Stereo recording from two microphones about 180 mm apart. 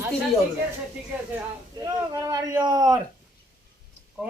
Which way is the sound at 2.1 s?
20° right (ahead or behind).